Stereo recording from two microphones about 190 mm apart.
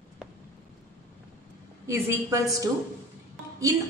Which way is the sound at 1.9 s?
15° right (ahead or behind).